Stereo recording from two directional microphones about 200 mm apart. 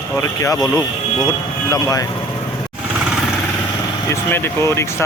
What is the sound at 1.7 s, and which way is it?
Speech, 15° left (ahead or behind).